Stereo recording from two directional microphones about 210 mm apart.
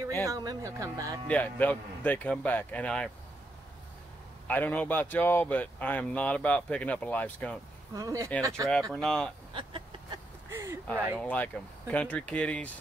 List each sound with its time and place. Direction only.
0.2 s speech: 15° right (ahead or behind)
1.2 s speech: 5° left (ahead or behind)
4.5 s speech: 10° left (ahead or behind)
7.9 s speech: 15° right (ahead or behind)
8.9 s speech: 5° left (ahead or behind)
9.5 s a sound: 25° right (ahead or behind)
10.5 s a sound: 10° right (ahead or behind)
11.1 s speech: 5° left (ahead or behind)